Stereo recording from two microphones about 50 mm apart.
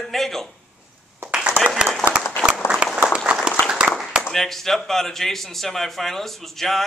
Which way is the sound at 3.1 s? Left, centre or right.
Centre.